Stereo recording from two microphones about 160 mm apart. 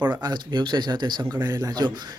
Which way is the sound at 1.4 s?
15° right (ahead or behind).